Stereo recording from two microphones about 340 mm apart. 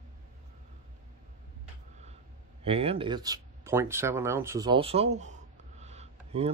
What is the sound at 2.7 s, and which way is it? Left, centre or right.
Speech, centre.